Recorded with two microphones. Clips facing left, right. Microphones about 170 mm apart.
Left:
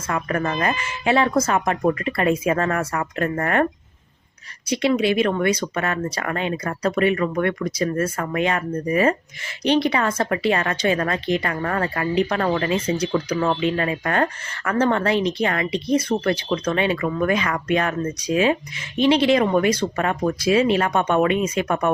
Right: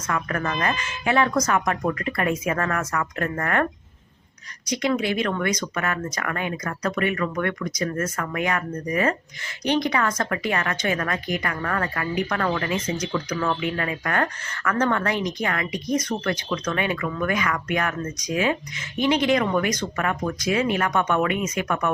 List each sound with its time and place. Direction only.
0.1 s speech: 30° left (ahead or behind)
0.5 s speech: 15° left (ahead or behind)
4.7 s speech: 25° left (ahead or behind)